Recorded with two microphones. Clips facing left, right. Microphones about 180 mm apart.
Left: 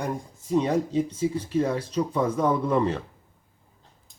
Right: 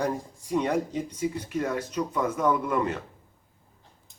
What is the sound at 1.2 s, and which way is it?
Speech, 30° left (ahead or behind).